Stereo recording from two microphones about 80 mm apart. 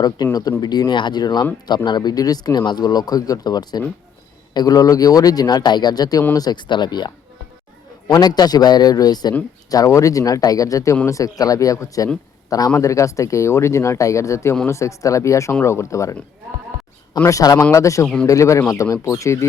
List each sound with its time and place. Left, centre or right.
0.2 s a man's voice: left
8.1 s a man's voice: left
12.7 s speech: left
17.2 s speech: left